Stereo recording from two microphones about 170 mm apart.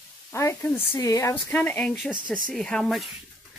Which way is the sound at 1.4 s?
10° left (ahead or behind).